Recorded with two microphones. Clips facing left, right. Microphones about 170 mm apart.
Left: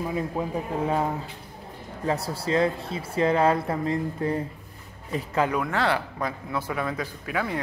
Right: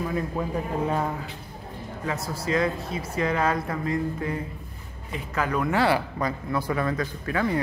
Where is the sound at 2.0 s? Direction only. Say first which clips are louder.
Left 3 dB; 30° left (ahead or behind).